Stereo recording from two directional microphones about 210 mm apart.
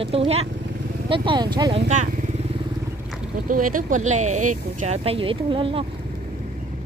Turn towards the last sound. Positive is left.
turn(degrees=-25)  # may be behind; listen again after turning